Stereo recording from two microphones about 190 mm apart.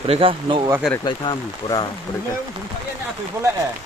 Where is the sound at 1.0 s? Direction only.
25° left (ahead or behind).